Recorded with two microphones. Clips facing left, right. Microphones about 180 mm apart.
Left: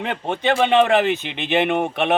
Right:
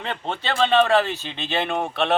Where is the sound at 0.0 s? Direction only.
15° left (ahead or behind).